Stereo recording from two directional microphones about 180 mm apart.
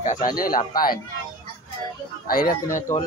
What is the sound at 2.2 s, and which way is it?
Speech, 55° left (ahead or behind).